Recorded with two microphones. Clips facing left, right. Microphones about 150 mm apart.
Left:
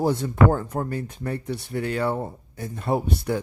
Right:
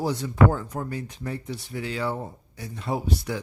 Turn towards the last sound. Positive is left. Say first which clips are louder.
# left 4 dB
turn(degrees=55)  # may be behind; listen again after turning